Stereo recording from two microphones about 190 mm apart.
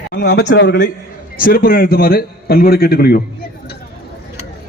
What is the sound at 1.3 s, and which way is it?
A man's voice, 50° left (ahead or behind).